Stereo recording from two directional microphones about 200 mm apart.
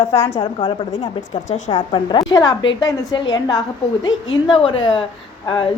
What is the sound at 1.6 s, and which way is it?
Speech, 35° left (ahead or behind).